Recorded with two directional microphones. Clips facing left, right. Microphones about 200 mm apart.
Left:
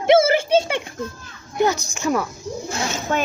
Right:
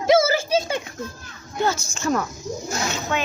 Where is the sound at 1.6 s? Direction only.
15° left (ahead or behind).